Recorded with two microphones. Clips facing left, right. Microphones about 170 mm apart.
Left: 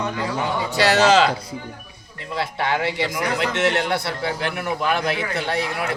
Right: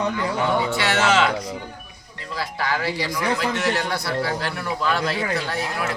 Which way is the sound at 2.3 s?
25° left (ahead or behind).